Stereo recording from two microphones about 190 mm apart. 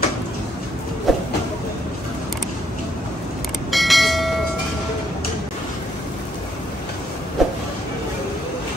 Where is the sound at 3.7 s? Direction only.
Centre (ahead or behind).